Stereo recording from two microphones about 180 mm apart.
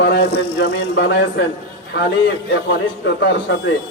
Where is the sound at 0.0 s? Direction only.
65° left (ahead or behind).